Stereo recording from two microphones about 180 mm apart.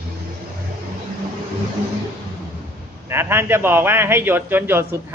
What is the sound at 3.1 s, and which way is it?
A man's voice, 15° right (ahead or behind).